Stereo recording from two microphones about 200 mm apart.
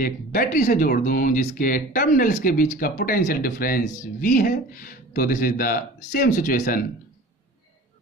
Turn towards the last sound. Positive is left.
turn(degrees=45)  # may be behind; listen again after turning